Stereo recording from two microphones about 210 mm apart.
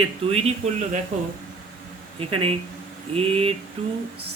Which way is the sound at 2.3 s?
25° right (ahead or behind).